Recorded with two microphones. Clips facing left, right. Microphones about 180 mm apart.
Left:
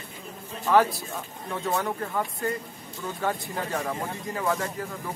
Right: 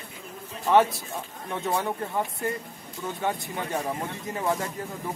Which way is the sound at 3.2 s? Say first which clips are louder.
Left 1 dB; 20° right (ahead or behind).